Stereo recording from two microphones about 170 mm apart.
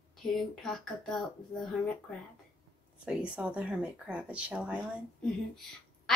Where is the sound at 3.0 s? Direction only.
5° right (ahead or behind).